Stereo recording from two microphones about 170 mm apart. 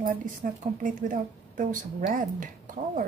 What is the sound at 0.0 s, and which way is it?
A woman's voice, 50° right (ahead or behind).